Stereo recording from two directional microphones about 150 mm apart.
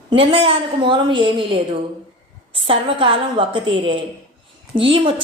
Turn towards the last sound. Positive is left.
turn(degrees=-35)  # may be behind; listen again after turning